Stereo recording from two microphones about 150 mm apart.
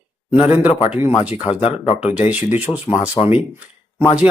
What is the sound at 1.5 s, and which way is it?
Speech, 40° left (ahead or behind).